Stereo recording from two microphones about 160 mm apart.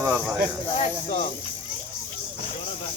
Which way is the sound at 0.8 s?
35° left (ahead or behind).